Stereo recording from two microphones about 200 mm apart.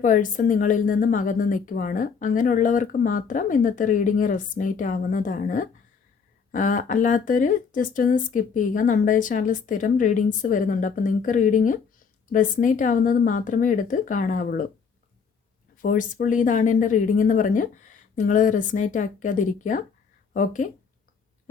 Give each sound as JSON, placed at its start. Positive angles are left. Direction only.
{"t": 0.0, "sound": "a woman's voice", "side_deg": 40}
{"t": 15.8, "sound": "a woman's voice", "side_deg": 40}